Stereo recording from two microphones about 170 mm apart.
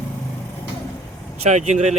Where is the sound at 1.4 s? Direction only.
45° right (ahead or behind).